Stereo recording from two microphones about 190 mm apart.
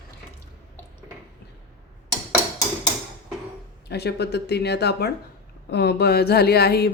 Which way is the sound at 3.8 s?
60° left (ahead or behind).